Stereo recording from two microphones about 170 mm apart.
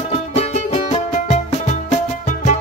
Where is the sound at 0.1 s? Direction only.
40° left (ahead or behind).